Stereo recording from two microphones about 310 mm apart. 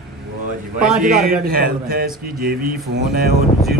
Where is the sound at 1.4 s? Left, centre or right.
Right.